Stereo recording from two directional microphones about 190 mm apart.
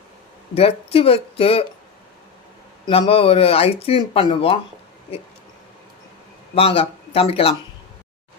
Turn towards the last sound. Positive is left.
turn(degrees=30)  # may be behind; listen again after turning